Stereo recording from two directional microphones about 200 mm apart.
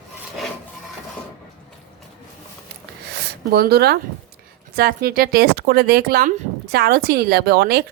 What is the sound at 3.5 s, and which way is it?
Speech, 55° right (ahead or behind).